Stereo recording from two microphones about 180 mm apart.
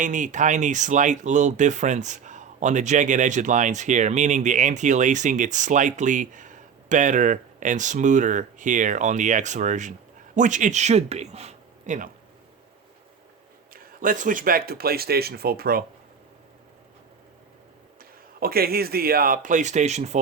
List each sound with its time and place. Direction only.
0.0 s speech: 45° right (ahead or behind)
14.0 s speech: 50° right (ahead or behind)
18.3 s speech: 55° right (ahead or behind); by 20.1 s 40° right (ahead or behind)